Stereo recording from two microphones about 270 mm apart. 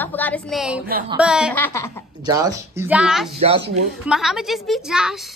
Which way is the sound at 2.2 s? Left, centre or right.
Centre.